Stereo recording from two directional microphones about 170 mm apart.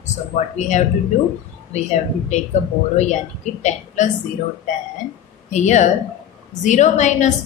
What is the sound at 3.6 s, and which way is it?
Speech, 45° left (ahead or behind).